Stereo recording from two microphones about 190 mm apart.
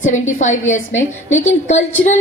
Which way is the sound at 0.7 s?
40° left (ahead or behind).